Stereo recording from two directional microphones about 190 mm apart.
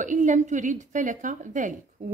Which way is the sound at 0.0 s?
40° right (ahead or behind).